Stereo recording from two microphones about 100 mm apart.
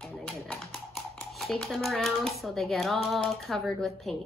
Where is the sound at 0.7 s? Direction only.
Centre (ahead or behind).